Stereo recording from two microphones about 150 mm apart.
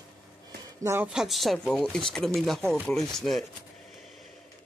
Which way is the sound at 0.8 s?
15° right (ahead or behind).